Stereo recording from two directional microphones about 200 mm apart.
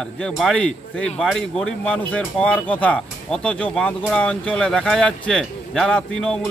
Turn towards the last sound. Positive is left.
turn(degrees=5)  # may be behind; listen again after turning